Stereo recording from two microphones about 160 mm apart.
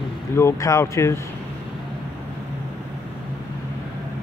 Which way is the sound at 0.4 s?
20° left (ahead or behind).